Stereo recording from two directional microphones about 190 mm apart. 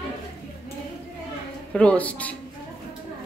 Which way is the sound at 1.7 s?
5° left (ahead or behind).